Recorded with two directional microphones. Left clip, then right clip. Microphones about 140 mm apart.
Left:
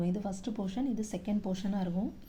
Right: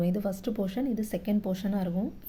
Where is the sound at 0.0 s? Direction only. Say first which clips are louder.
Right 6 dB; 35° right (ahead or behind).